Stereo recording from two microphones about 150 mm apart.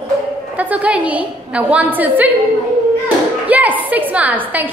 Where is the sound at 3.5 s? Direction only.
10° right (ahead or behind).